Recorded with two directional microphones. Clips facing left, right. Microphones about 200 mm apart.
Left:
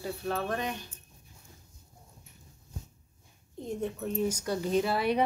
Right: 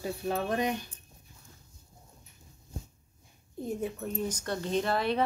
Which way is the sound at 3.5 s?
5° right (ahead or behind).